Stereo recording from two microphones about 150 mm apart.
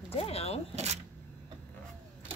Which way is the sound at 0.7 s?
50° right (ahead or behind).